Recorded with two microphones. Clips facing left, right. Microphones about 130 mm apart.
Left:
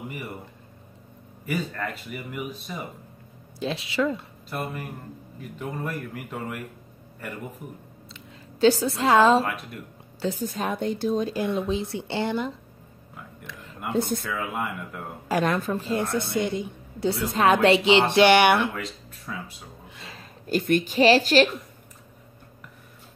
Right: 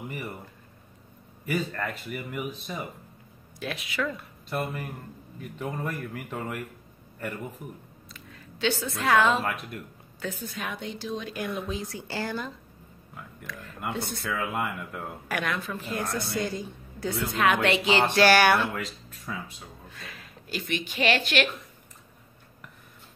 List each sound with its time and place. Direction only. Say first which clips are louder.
1.4 s speech: even; centre (ahead or behind)
3.5 s a woman's voice: left 6 dB; 25° left (ahead or behind)
4.5 s speech: right 1 dB; centre (ahead or behind)
8.5 s a woman's voice: left 9 dB; 40° left (ahead or behind)
9.5 s speech: even; centre (ahead or behind)
10.2 s a woman's voice: left 7 dB; 35° left (ahead or behind)
11.2 s a woman's voice: left 6 dB; 30° left (ahead or behind)
13.9 s speech: left 14 dB; 45° left (ahead or behind)
14.3 s speech: even; centre (ahead or behind)
15.2 s a woman's voice: left 8 dB; 35° left (ahead or behind)
18.8 s speech: left 1 dB; centre (ahead or behind)
19.9 s a sound: left 1 dB; 25° left (ahead or behind)
20.4 s a woman's voice: left 10 dB; 45° left (ahead or behind)